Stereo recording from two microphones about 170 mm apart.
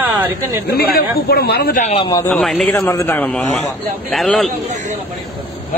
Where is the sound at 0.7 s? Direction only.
60° left (ahead or behind).